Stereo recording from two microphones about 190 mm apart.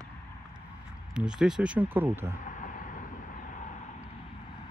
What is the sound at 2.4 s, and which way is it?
Vehicle, 45° left (ahead or behind).